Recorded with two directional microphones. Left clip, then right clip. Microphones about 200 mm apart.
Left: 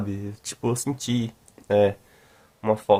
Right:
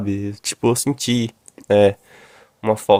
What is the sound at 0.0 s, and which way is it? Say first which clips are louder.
Speech: right 9 dB; 40° right (ahead or behind).